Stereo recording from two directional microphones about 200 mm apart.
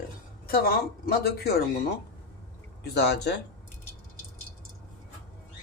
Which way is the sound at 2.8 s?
55° left (ahead or behind).